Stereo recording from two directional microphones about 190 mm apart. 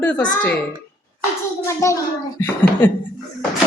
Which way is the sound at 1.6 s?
15° left (ahead or behind).